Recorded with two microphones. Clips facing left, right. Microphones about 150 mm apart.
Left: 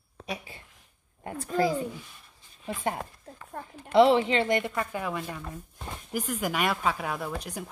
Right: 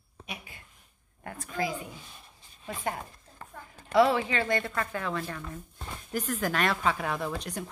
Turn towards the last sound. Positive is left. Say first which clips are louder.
# right 1 dB
turn(degrees=10)  # may be behind; listen again after turning